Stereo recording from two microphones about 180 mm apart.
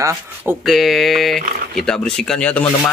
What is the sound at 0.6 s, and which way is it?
Speech, centre (ahead or behind).